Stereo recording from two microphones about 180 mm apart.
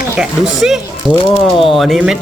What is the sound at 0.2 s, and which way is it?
Speech, centre (ahead or behind).